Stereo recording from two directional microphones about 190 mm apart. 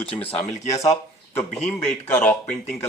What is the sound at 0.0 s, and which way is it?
Speech, 30° left (ahead or behind).